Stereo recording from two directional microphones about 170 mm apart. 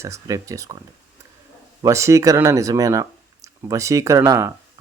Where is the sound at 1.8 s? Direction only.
15° right (ahead or behind).